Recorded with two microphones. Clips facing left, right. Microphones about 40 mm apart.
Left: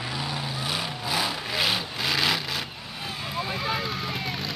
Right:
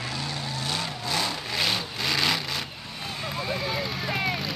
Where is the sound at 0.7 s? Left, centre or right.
Centre.